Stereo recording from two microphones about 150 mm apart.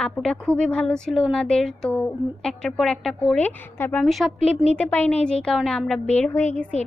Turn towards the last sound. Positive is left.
turn(degrees=10)  # may be behind; listen again after turning